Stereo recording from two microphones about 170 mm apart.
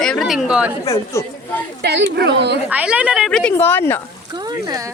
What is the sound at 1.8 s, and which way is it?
Speech, 90° right.